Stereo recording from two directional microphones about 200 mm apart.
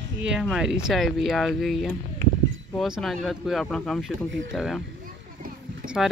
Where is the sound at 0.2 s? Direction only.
5° right (ahead or behind).